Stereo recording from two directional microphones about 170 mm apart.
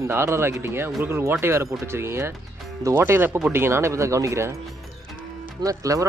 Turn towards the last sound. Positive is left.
turn(degrees=-20)  # may be behind; listen again after turning